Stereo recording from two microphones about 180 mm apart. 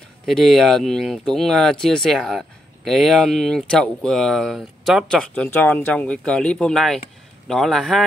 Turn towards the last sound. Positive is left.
turn(degrees=0)  # may be behind; listen again after turning